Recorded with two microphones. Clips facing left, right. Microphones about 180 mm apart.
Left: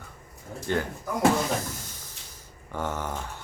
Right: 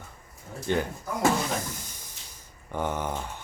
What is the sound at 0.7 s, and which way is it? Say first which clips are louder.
Speech: right 1 dB; 20° right (ahead or behind).